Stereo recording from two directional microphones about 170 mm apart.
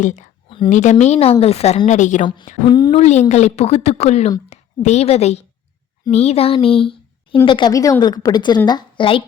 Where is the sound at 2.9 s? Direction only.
40° left (ahead or behind).